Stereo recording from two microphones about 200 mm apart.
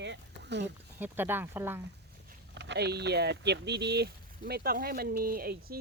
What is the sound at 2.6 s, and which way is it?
Speech, 60° right (ahead or behind).